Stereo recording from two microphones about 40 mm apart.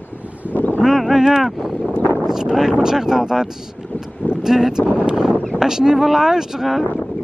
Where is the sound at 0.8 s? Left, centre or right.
Centre.